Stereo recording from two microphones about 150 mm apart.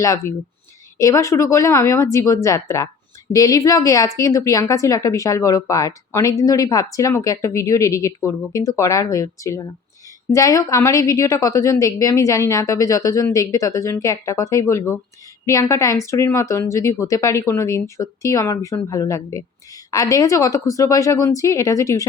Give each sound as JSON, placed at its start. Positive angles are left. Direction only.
{"t": 0.0, "sound": "a woman's voice", "side_deg": 20}